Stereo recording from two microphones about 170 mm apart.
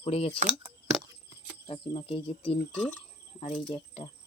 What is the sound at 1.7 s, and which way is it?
Speech, 35° left (ahead or behind).